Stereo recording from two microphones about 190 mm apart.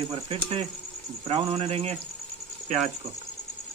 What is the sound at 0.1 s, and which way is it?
Speech, 35° right (ahead or behind).